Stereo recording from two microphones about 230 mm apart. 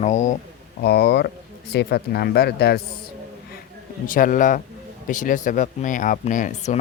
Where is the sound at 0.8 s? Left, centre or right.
Left.